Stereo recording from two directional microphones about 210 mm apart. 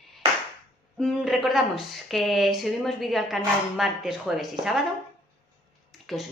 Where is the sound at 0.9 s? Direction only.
Centre (ahead or behind).